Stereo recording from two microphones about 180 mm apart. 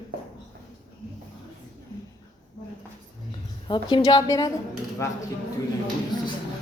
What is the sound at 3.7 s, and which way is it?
A woman's voice, 25° left (ahead or behind).